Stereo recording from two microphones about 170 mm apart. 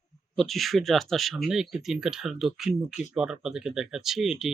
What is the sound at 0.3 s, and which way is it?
Speech, centre (ahead or behind).